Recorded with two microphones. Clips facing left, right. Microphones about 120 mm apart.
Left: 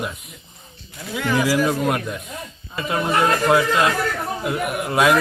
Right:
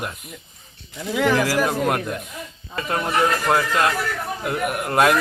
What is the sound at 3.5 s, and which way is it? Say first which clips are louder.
A man's voice: left 2 dB; centre (ahead or behind).